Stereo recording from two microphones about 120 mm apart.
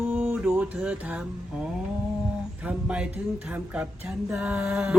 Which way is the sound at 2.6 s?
10° right (ahead or behind).